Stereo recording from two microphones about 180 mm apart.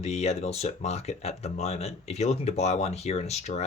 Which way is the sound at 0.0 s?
35° left (ahead or behind).